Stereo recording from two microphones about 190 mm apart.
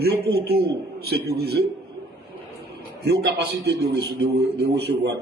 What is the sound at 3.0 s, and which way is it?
Speech, 60° right (ahead or behind).